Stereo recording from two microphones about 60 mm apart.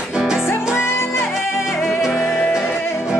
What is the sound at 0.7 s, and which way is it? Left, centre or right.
Music, left.